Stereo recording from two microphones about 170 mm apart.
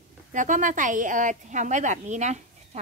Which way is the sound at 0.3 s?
50° right (ahead or behind).